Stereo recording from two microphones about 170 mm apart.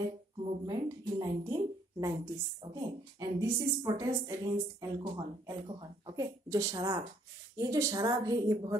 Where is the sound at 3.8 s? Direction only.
20° right (ahead or behind).